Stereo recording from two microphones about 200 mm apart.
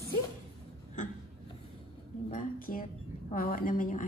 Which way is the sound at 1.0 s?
40° left (ahead or behind).